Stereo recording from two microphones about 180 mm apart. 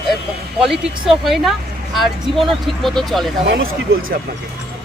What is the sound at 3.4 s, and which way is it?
Speech, 60° right (ahead or behind).